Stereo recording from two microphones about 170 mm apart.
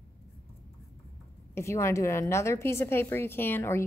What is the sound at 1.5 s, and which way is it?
A woman's voice, 15° left (ahead or behind).